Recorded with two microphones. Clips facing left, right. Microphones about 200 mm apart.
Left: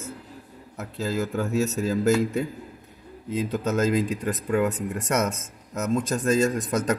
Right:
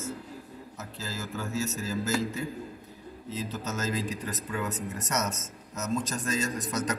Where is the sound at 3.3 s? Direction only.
55° left (ahead or behind).